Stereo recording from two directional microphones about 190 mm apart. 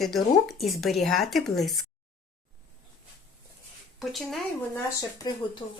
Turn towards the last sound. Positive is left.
turn(degrees=20)  # may be behind; listen again after turning